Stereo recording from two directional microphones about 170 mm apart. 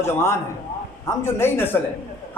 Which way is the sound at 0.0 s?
15° left (ahead or behind).